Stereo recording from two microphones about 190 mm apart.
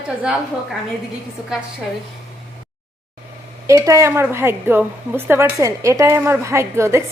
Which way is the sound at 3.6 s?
15° right (ahead or behind).